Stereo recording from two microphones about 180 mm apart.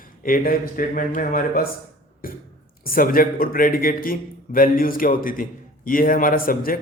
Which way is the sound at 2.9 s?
50° left (ahead or behind).